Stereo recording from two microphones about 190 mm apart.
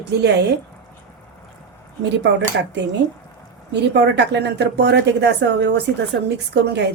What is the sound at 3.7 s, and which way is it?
A woman's voice, 65° right (ahead or behind).